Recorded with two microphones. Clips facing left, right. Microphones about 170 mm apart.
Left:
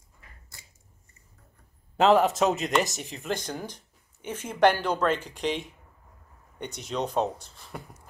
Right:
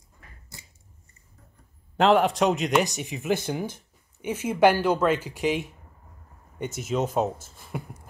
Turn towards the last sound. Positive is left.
turn(degrees=-5)  # may be behind; listen again after turning